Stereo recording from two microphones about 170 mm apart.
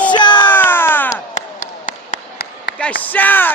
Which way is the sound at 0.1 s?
25° left (ahead or behind).